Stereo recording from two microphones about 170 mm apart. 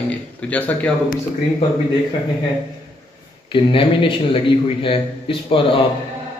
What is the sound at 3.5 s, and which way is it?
Speech, 30° left (ahead or behind).